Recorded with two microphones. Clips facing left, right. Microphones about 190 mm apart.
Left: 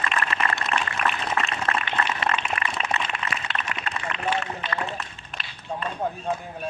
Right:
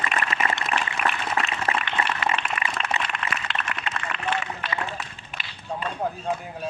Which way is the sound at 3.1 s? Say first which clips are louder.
Even; centre (ahead or behind).